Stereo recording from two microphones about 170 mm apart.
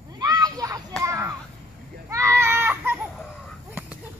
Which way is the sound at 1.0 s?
15° right (ahead or behind).